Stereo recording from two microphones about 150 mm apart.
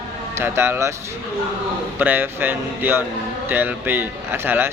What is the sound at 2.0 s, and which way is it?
Speech, 10° right (ahead or behind).